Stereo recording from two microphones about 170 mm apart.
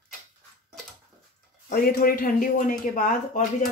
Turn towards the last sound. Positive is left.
turn(degrees=50)  # may be behind; listen again after turning